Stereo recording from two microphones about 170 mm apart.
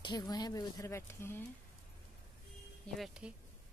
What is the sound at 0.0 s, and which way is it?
Speech, 20° left (ahead or behind).